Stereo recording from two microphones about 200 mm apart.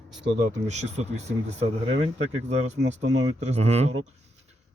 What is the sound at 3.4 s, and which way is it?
Speech, 30° right (ahead or behind).